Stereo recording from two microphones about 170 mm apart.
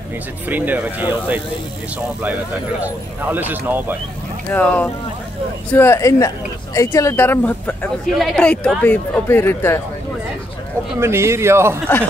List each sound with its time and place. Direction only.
0.5 s speech: 10° right (ahead or behind)
2.8 s speech: 10° right (ahead or behind)
4.5 s speech: 10° left (ahead or behind)
11.0 s speech: 15° right (ahead or behind)